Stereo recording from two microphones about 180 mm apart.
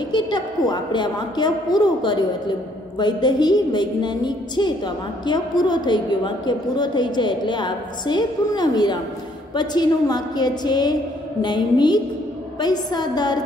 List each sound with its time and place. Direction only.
0.1 s a woman's voice: 25° left (ahead or behind)